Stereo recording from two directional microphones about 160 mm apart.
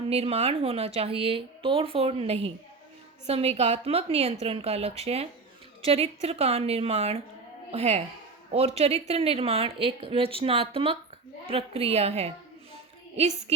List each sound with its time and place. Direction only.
0.1 s speech: 40° right (ahead or behind)